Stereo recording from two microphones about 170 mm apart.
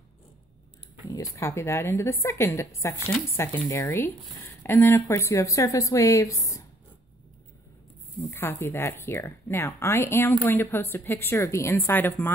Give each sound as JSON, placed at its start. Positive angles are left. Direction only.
{"t": 1.0, "sound": "speech", "side_deg": 20}
{"t": 8.3, "sound": "speech", "side_deg": 15}